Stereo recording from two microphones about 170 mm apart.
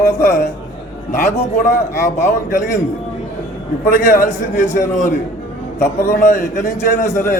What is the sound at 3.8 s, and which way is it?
A man's voice, 55° left (ahead or behind).